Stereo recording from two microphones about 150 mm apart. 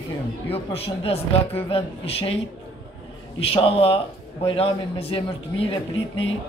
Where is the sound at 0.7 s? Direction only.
40° left (ahead or behind).